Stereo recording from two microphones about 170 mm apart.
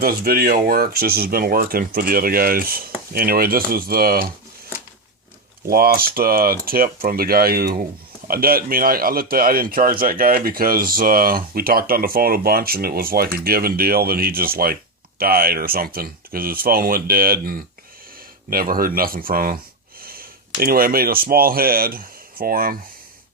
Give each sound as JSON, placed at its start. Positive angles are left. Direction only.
{"t": 0.0, "sound": "speech", "side_deg": -60}
{"t": 5.6, "sound": "speech", "side_deg": -60}